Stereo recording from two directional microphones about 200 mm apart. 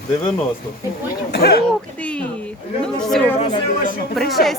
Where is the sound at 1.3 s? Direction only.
50° left (ahead or behind).